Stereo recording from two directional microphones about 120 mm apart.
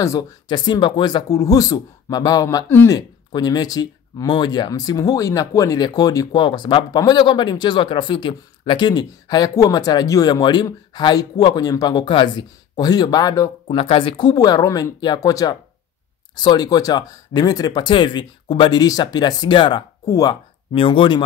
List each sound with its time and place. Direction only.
0.5 s speech: 40° left (ahead or behind)
13.7 s speech: 50° left (ahead or behind)
14.3 s speech: 30° left (ahead or behind)
20.7 s speech: 45° left (ahead or behind)